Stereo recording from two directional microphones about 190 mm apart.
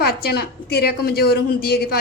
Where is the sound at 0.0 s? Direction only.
55° left (ahead or behind).